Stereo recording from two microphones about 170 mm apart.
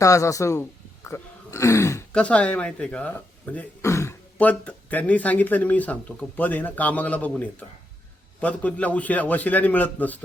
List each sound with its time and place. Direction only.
0.0 s speech: 20° left (ahead or behind)